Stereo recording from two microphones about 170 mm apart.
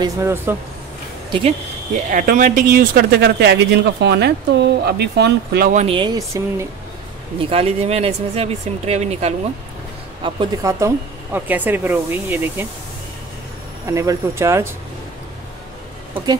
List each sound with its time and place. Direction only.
0.0 s speech: 15° right (ahead or behind)
2.0 s speech: 50° right (ahead or behind); by 5.7 s 75° right (ahead or behind)
5.7 s speech: 45° right (ahead or behind)
5.9 s speech: 20° right (ahead or behind)
7.3 s speech: 35° right (ahead or behind)
10.2 s speech: 25° right (ahead or behind)
13.8 s speech: 20° right (ahead or behind)